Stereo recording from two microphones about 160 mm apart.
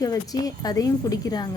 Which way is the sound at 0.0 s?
20° left (ahead or behind).